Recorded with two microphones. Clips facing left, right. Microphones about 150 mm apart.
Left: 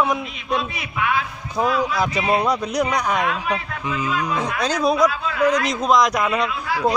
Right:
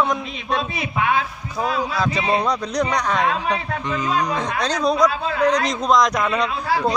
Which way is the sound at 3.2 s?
35° right (ahead or behind).